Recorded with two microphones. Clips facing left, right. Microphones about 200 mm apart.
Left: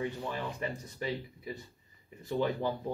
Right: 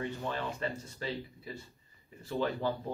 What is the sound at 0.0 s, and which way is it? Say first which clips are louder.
Speech: even; 15° left (ahead or behind).